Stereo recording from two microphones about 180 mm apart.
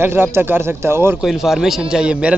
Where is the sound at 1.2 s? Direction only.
Centre (ahead or behind).